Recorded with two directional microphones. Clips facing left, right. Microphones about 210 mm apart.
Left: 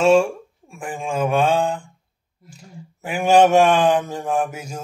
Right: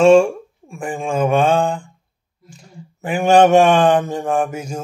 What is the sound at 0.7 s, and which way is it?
A man's voice, 5° left (ahead or behind).